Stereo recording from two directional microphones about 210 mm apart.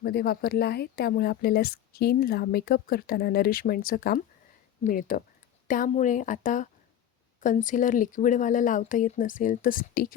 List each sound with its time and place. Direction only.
0.0 s a woman's voice: 50° left (ahead or behind)